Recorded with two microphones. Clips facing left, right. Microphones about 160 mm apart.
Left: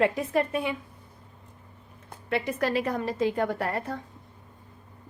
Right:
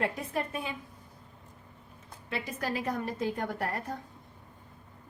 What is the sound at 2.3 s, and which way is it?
A woman's voice, 70° left (ahead or behind).